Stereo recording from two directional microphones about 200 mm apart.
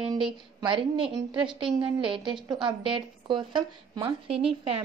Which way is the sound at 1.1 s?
25° right (ahead or behind).